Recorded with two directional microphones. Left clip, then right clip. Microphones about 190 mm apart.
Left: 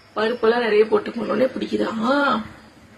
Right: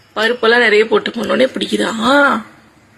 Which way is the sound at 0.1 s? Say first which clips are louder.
Right 7 dB; 20° right (ahead or behind).